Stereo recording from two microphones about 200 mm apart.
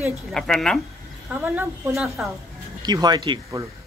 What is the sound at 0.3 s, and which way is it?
Speech, 5° left (ahead or behind).